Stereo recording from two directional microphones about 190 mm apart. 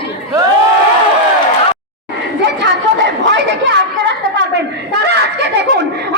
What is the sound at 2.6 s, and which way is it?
A woman's voice, 65° right (ahead or behind).